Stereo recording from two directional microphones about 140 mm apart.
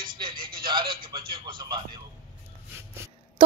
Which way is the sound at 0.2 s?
35° right (ahead or behind).